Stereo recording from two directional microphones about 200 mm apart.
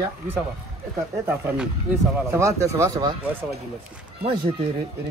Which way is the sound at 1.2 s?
10° right (ahead or behind).